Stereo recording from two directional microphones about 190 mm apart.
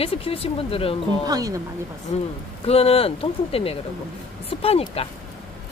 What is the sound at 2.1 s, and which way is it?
Speech, 30° left (ahead or behind).